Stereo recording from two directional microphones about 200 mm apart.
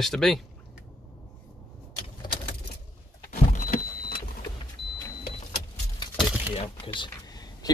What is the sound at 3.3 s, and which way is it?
Vehicle, 40° left (ahead or behind).